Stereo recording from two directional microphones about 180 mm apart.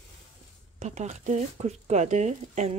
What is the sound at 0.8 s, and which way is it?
Speech, 40° right (ahead or behind).